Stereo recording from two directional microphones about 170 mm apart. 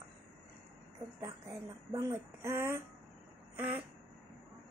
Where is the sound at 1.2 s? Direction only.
20° right (ahead or behind).